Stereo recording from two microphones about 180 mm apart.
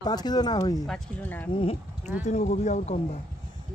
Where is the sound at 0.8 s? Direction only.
5° left (ahead or behind).